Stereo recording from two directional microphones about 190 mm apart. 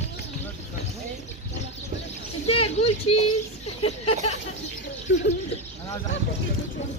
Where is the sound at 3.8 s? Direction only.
30° left (ahead or behind).